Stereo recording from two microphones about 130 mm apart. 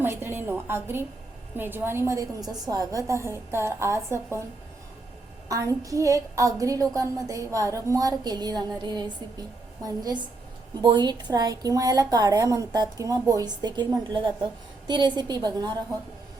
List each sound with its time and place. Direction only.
0.0 s a woman's voice: 15° right (ahead or behind)
5.5 s a woman's voice: 25° right (ahead or behind)